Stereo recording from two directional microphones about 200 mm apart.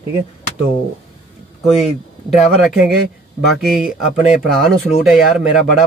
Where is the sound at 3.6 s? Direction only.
Centre (ahead or behind).